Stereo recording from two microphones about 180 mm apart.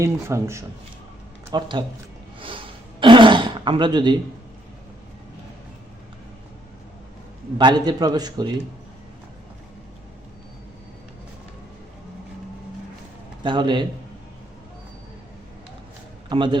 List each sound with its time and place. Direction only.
0.0 s a man's voice: 15° right (ahead or behind)
2.4 s throat clearing: 30° right (ahead or behind)
7.6 s a man's voice: 25° right (ahead or behind)
13.4 s a man's voice: 25° right (ahead or behind)
16.3 s a man's voice: 25° right (ahead or behind)